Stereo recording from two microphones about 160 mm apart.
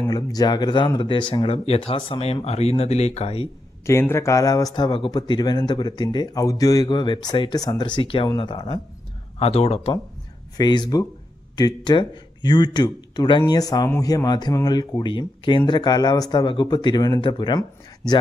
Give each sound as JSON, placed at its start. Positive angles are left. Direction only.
{"t": 0.0, "sound": "speech", "side_deg": 25}
{"t": 3.8, "sound": "speech", "side_deg": 15}
{"t": 9.4, "sound": "speech", "side_deg": 40}
{"t": 10.6, "sound": "speech", "side_deg": 25}